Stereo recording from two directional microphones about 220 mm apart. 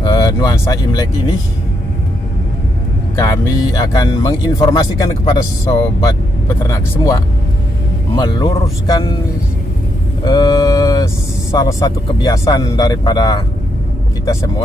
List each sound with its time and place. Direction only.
0.0 s speech: 20° left (ahead or behind)
3.2 s speech: 15° left (ahead or behind)
10.2 s mantra: 20° left (ahead or behind)
11.5 s speech: 20° left (ahead or behind)